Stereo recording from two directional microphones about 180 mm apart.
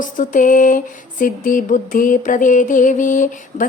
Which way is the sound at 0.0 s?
45° left (ahead or behind).